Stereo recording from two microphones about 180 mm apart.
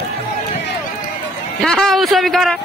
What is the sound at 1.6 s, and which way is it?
A man's voice, centre (ahead or behind).